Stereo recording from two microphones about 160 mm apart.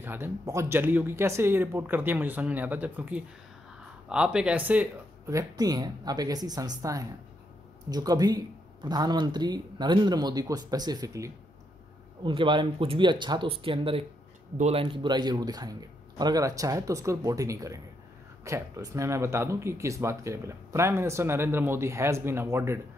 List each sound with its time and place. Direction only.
0.0 s speech: 15° right (ahead or behind)